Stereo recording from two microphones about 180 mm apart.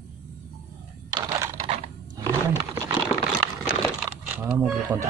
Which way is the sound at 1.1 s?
25° right (ahead or behind).